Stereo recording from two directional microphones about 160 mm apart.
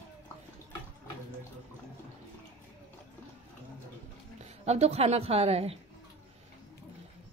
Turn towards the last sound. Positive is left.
turn(degrees=-40)  # may be behind; listen again after turning